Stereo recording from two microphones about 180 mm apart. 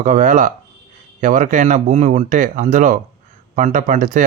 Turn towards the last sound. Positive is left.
turn(degrees=-45)  # may be behind; listen again after turning